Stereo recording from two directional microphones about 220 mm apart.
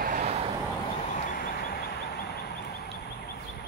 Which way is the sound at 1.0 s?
35° left (ahead or behind).